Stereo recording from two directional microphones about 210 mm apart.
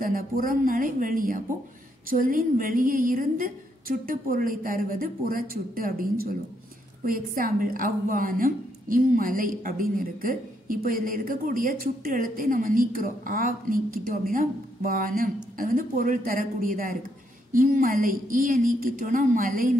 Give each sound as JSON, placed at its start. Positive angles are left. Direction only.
{"t": 0.0, "sound": "a woman's voice", "side_deg": -40}